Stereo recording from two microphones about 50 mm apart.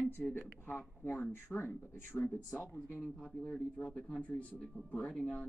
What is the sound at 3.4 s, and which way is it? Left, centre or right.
Speech, left.